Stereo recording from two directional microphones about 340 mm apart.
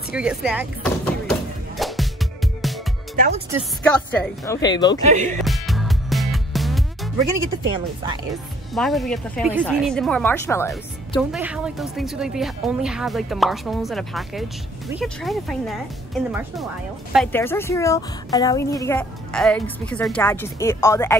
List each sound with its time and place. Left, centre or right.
0.1 s speech: centre
1.8 s music: centre
3.2 s speech: centre
3.5 s a woman's voice: centre
5.0 s speech: right
5.3 s music: centre
8.7 s a woman's voice: centre